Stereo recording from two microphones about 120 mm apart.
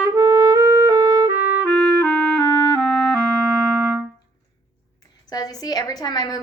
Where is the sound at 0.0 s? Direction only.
30° right (ahead or behind).